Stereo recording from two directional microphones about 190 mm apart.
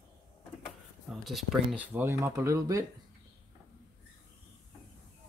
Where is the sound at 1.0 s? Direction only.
Centre (ahead or behind); by 2.8 s 15° right (ahead or behind).